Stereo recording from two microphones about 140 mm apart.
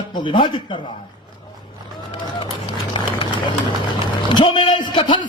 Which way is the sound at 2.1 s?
35° left (ahead or behind).